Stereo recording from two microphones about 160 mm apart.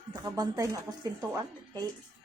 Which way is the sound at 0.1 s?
25° right (ahead or behind).